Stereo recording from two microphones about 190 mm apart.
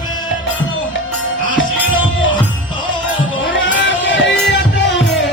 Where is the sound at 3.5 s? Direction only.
75° left (ahead or behind).